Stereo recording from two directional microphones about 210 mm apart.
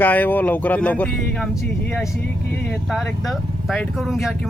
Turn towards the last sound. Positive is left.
turn(degrees=0)  # may be behind; listen again after turning